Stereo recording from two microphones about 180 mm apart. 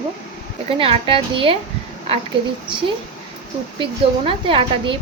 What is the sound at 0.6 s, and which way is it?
Speech, 30° right (ahead or behind).